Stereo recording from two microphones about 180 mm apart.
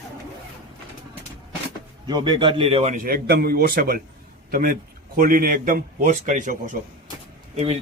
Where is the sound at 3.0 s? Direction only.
55° right (ahead or behind); by 7.8 s 35° right (ahead or behind).